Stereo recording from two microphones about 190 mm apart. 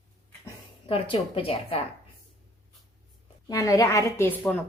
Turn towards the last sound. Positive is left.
turn(degrees=10)  # may be behind; listen again after turning